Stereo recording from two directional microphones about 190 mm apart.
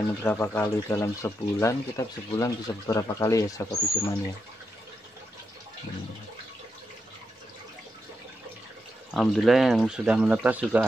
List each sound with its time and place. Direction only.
0.2 s speech: 10° left (ahead or behind)
9.1 s speech: centre (ahead or behind)